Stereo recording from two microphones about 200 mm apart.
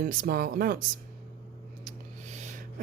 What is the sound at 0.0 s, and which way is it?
Speech, 45° right (ahead or behind).